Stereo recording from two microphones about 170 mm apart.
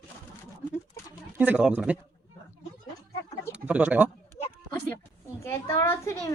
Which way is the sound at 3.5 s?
5° right (ahead or behind).